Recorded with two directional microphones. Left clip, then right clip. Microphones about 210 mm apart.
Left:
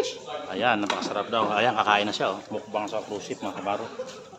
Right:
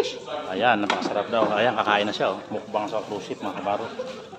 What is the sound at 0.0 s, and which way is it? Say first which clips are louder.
Speech: right 3 dB; 5° left (ahead or behind).